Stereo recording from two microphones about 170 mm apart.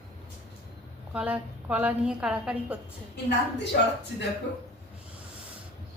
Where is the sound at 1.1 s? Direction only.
5° right (ahead or behind).